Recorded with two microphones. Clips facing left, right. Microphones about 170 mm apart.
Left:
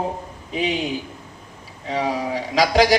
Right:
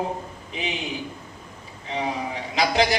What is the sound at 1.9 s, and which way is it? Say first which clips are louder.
A man's voice: left 5 dB; 90° left.